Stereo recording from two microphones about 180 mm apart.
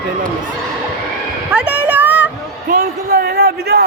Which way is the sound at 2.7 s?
55° right (ahead or behind).